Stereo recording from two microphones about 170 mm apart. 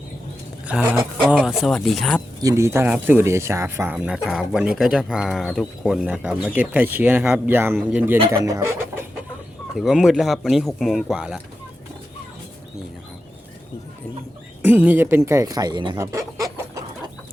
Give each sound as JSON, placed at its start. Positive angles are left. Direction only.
{"t": 0.7, "sound": "speech", "side_deg": -5}
{"t": 2.4, "sound": "speech", "side_deg": -20}
{"t": 9.7, "sound": "speech", "side_deg": 0}
{"t": 14.6, "sound": "speech", "side_deg": -10}
{"t": 16.0, "sound": "chicken", "side_deg": -20}